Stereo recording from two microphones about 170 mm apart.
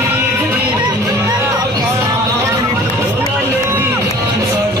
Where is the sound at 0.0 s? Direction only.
10° right (ahead or behind).